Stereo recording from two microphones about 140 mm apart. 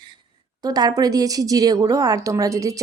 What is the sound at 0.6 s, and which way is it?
A woman's voice, 30° right (ahead or behind).